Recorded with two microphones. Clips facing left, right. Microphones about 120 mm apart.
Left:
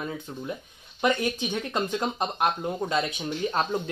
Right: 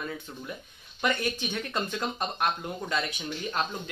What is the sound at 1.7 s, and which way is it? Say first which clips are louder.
Speech: left 4 dB; 25° left (ahead or behind).